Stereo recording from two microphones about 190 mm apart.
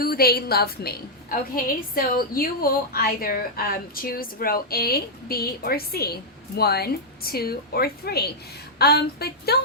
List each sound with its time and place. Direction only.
0.0 s a woman's voice: 55° left (ahead or behind)